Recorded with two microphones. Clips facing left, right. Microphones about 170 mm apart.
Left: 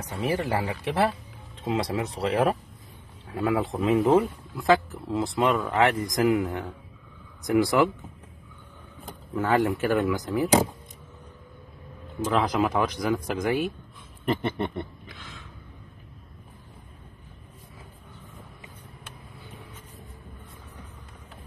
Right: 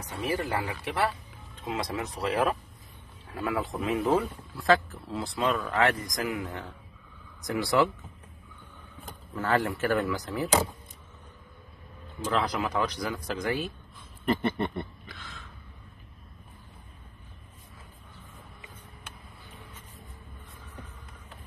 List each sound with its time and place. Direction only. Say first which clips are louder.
0.1 s speech: left 3 dB; 25° left (ahead or behind)
9.3 s speech: left 4 dB; 10° left (ahead or behind)
12.4 s speech: left 4 dB; 20° left (ahead or behind)
14.2 s a sound: even; 15° left (ahead or behind)